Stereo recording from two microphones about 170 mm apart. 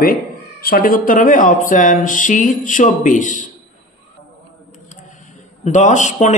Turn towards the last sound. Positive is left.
turn(degrees=45)  # may be behind; listen again after turning